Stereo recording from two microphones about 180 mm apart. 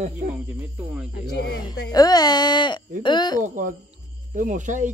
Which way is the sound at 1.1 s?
65° left (ahead or behind).